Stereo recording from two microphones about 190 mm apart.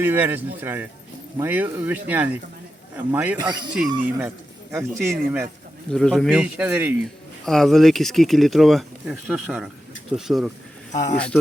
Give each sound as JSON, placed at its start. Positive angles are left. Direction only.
{"t": 0.0, "sound": "a man's voice", "side_deg": -10}
{"t": 3.3, "sound": "speech", "side_deg": -20}
{"t": 3.8, "sound": "speech", "side_deg": -10}
{"t": 5.9, "sound": "speech", "side_deg": 0}
{"t": 7.4, "sound": "speech", "side_deg": 0}
{"t": 10.9, "sound": "a man's voice", "side_deg": 40}